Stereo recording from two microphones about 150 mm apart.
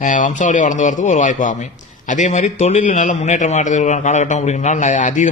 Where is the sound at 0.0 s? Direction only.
55° left (ahead or behind).